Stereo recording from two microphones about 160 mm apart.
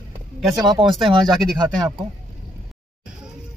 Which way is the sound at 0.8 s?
35° right (ahead or behind).